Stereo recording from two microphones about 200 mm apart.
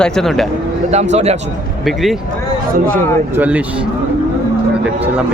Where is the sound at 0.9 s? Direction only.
35° right (ahead or behind).